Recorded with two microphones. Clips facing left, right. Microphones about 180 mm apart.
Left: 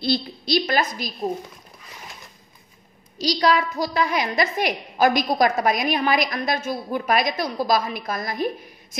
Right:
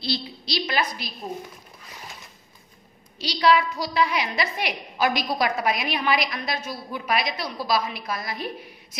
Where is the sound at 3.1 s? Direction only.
40° left (ahead or behind).